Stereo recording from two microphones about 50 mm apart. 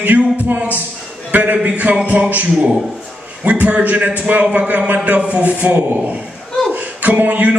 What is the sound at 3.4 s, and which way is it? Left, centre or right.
A man's voice, right.